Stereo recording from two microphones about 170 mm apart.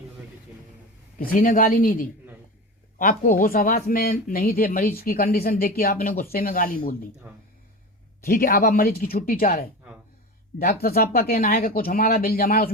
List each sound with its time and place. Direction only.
1.3 s speech: 55° left (ahead or behind)
8.2 s speech: 60° left (ahead or behind)